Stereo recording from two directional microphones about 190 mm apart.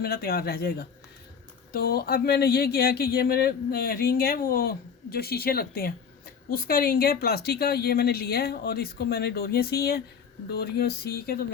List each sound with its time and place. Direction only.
0.0 s speech: 55° left (ahead or behind)